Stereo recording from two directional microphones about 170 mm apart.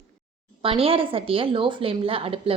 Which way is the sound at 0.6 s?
35° right (ahead or behind).